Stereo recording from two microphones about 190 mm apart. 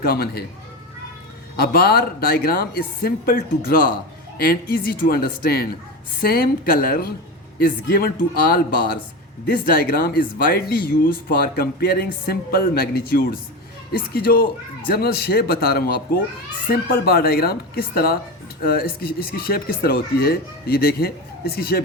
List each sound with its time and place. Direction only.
0.0 s a man's voice: 55° left (ahead or behind)
1.5 s a man's voice: 55° left (ahead or behind)
16.9 s speech: 50° left (ahead or behind)